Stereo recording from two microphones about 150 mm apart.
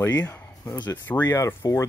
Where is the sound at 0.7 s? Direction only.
30° left (ahead or behind).